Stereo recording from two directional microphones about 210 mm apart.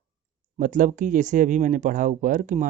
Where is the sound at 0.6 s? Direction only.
40° right (ahead or behind).